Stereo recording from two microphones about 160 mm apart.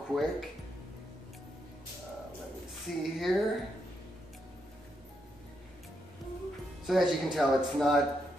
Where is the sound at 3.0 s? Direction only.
Centre (ahead or behind).